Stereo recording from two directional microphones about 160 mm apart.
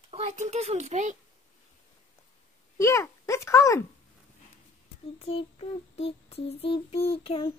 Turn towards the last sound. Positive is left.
turn(degrees=35)  # may be behind; listen again after turning